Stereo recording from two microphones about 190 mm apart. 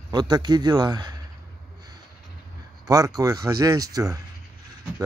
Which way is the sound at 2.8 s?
20° right (ahead or behind).